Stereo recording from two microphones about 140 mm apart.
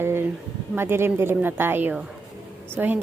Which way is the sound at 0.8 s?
15° right (ahead or behind).